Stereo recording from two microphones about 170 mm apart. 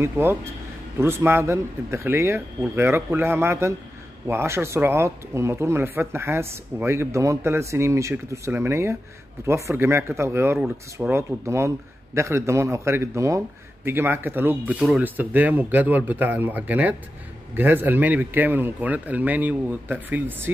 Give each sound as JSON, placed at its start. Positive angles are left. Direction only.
{"t": 0.0, "sound": "speech", "side_deg": -15}